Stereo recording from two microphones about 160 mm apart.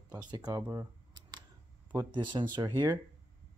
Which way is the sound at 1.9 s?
25° right (ahead or behind).